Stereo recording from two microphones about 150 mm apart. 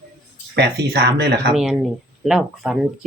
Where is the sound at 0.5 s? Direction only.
90° right.